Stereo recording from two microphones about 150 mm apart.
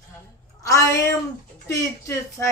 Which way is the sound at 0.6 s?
20° left (ahead or behind).